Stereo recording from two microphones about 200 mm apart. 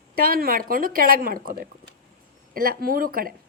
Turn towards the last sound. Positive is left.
turn(degrees=-45)  # may be behind; listen again after turning